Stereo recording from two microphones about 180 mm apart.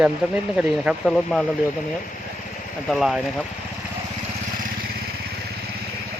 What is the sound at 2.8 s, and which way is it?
Speech, centre (ahead or behind).